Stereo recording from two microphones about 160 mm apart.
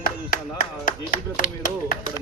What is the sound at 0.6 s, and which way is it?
Speech, 55° left (ahead or behind).